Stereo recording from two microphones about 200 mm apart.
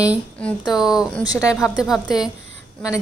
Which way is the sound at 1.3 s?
15° left (ahead or behind).